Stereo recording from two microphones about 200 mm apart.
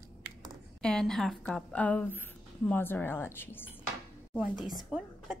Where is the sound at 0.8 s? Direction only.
5° left (ahead or behind).